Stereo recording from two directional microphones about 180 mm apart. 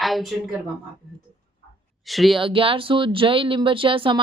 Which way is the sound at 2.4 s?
30° right (ahead or behind).